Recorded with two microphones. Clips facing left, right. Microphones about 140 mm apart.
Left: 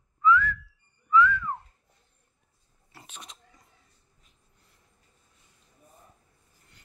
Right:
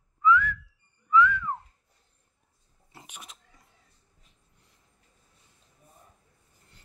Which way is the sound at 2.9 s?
15° right (ahead or behind).